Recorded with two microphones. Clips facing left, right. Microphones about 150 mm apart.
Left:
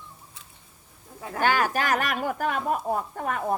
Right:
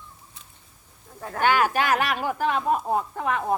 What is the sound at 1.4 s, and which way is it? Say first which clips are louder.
Speech: right 2 dB; 40° left (ahead or behind).